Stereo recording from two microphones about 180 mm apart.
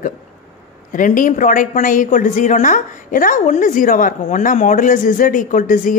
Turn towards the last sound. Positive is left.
turn(degrees=45)  # may be behind; listen again after turning